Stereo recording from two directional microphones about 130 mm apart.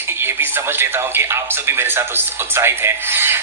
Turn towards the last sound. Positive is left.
turn(degrees=-15)  # may be behind; listen again after turning